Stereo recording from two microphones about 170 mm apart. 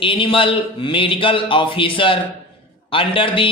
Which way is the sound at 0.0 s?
30° left (ahead or behind).